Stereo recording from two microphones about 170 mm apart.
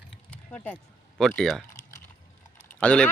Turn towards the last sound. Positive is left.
turn(degrees=5)  # may be behind; listen again after turning